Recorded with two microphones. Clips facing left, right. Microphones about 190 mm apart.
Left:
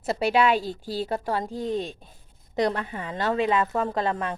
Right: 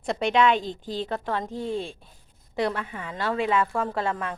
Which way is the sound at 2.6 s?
40° left (ahead or behind).